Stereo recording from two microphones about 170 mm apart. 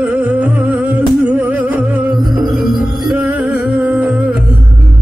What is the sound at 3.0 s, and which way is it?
Music, 10° right (ahead or behind).